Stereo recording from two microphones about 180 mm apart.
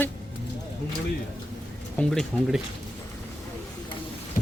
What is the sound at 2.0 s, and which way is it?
Speech, centre (ahead or behind).